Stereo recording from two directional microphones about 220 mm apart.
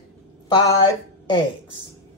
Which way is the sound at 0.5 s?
20° left (ahead or behind).